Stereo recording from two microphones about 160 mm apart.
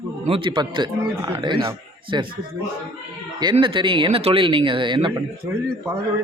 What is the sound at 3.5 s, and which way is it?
A man's voice, 30° right (ahead or behind).